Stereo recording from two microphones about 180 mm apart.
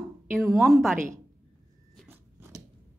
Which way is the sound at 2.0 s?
15° right (ahead or behind).